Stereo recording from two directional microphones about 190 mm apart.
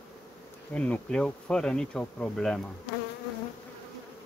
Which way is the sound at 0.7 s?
5° left (ahead or behind).